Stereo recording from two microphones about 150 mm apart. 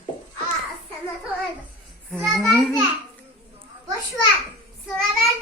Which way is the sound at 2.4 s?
5° left (ahead or behind).